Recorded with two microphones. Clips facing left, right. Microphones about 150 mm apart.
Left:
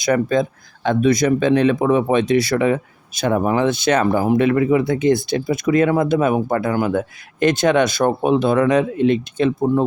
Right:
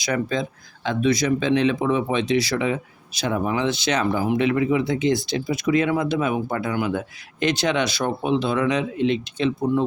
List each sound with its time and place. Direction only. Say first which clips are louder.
0.0 s speech: left 7 dB; 50° left (ahead or behind)